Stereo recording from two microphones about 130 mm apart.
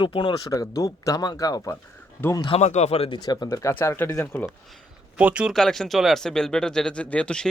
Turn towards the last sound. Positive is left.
turn(degrees=5)  # may be behind; listen again after turning